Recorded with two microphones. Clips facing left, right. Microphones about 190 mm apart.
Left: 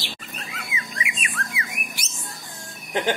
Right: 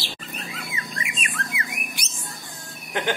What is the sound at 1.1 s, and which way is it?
Squawk, 40° right (ahead or behind).